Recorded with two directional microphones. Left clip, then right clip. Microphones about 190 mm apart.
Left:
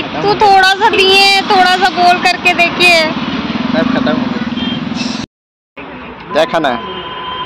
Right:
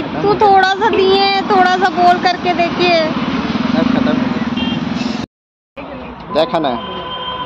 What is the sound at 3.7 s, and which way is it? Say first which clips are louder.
Vehicle: left 3 dB; 35° left (ahead or behind).